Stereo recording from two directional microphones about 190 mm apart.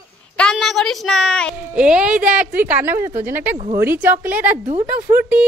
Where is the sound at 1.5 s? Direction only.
5° right (ahead or behind).